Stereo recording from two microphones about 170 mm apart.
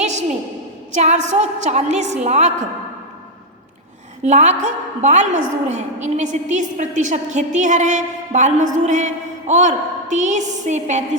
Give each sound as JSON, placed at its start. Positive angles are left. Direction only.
{"t": 0.0, "sound": "a sound", "side_deg": -40}
{"t": 0.9, "sound": "a woman's voice", "side_deg": -45}
{"t": 4.2, "sound": "a woman's voice", "side_deg": -40}